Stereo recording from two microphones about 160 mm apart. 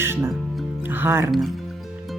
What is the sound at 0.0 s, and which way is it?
Music, 15° right (ahead or behind).